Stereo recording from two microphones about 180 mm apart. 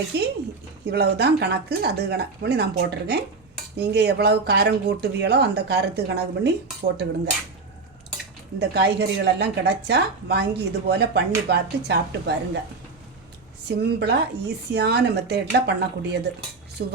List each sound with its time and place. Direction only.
0.1 s speech: 65° right (ahead or behind)
8.5 s speech: 65° right (ahead or behind)
13.7 s speech: 70° right (ahead or behind)